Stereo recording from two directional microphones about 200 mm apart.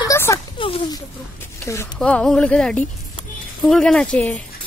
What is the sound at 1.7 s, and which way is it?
Speech, 10° left (ahead or behind).